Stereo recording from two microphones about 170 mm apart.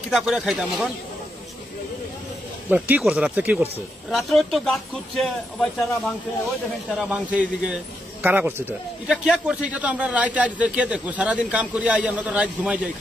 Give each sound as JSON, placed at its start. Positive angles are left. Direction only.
{"t": 0.1, "sound": "speech", "side_deg": 0}
{"t": 2.7, "sound": "a man's voice", "side_deg": -10}